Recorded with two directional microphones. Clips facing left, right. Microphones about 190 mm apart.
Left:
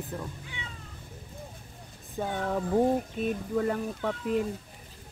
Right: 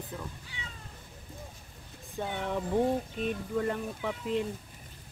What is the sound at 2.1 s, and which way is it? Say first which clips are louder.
Speech: left 3 dB; 5° left (ahead or behind).